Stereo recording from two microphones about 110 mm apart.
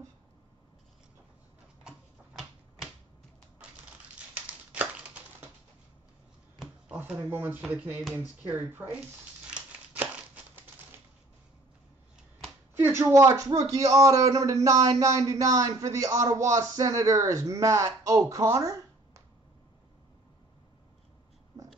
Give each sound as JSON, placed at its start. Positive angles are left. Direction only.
{"t": 1.9, "sound": "typewriter", "side_deg": 0}
{"t": 4.3, "sound": "a sound", "side_deg": -10}
{"t": 6.9, "sound": "a sound", "side_deg": -15}
{"t": 7.2, "sound": "speech", "side_deg": -20}
{"t": 9.5, "sound": "scissors", "side_deg": -10}
{"t": 12.7, "sound": "a man's voice", "side_deg": -20}